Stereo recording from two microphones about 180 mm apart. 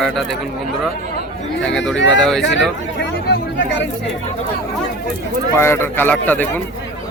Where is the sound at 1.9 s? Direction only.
90° left.